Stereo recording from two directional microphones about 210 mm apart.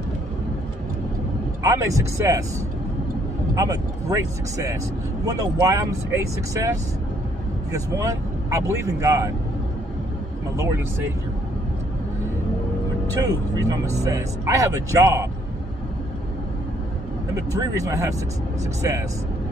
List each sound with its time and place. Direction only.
1.6 s speech: 15° right (ahead or behind)
3.5 s speech: 15° right (ahead or behind)
10.5 s speech: 15° right (ahead or behind)
13.2 s speech: 15° right (ahead or behind)
17.7 s speech: 15° right (ahead or behind)